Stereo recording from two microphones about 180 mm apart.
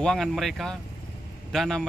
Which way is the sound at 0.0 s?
Centre (ahead or behind).